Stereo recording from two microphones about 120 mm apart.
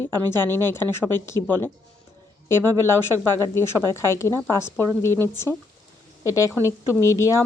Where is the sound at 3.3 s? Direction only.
20° left (ahead or behind).